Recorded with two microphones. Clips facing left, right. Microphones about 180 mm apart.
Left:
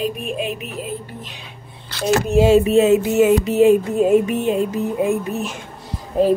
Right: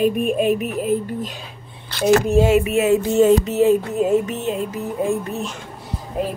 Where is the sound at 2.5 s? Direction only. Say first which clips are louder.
Left 3 dB; 30° left (ahead or behind).